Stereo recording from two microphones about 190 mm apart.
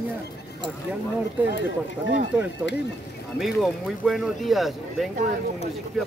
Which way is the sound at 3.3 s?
Centre (ahead or behind).